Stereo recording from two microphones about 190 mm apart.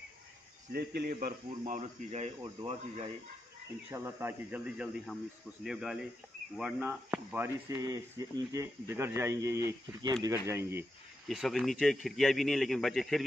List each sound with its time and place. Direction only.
0.7 s speech: 55° right (ahead or behind)
1.8 s speech: 35° right (ahead or behind)
3.9 s speech: 10° right (ahead or behind)
11.2 s speech: centre (ahead or behind)